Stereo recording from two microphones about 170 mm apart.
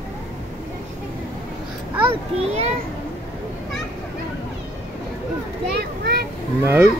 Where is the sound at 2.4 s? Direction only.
40° right (ahead or behind).